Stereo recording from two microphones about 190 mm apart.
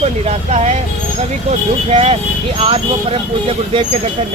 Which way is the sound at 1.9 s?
30° right (ahead or behind).